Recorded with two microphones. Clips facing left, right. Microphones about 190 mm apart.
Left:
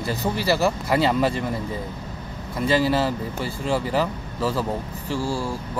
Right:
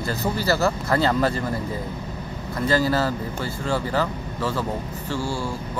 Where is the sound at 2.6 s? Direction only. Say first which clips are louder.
Left 1 dB; centre (ahead or behind).